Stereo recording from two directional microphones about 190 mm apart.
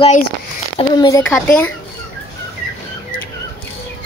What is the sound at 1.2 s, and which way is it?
Speech, 5° left (ahead or behind).